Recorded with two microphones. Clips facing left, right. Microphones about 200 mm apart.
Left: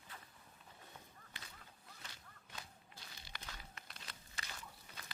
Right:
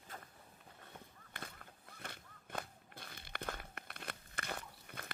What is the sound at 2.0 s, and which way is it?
Walk, 55° right (ahead or behind).